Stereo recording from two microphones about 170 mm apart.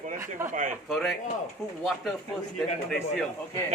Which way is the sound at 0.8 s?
Centre (ahead or behind).